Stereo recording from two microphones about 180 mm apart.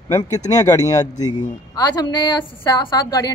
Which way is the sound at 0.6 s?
20° left (ahead or behind).